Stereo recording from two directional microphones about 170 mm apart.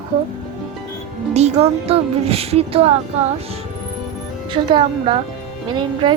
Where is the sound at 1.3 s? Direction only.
40° right (ahead or behind).